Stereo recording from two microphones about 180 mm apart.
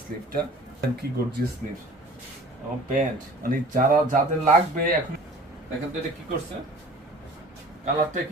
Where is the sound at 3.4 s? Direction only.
50° right (ahead or behind).